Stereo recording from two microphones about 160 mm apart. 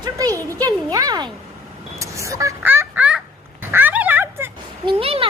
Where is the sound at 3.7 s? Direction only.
10° right (ahead or behind).